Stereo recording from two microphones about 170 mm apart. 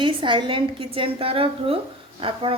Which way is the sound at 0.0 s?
30° right (ahead or behind).